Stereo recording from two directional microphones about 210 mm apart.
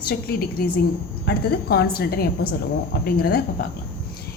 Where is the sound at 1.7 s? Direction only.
45° left (ahead or behind).